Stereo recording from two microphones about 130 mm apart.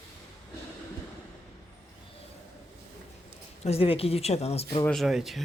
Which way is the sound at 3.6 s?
50° left (ahead or behind).